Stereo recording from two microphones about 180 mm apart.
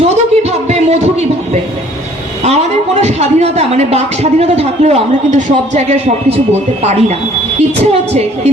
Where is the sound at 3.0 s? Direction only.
35° right (ahead or behind).